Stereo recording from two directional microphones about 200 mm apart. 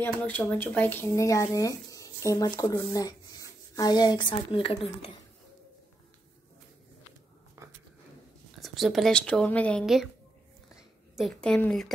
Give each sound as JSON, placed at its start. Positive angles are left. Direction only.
{"t": 0.0, "sound": "speech", "side_deg": 5}
{"t": 8.5, "sound": "speech", "side_deg": 0}
{"t": 11.1, "sound": "speech", "side_deg": 0}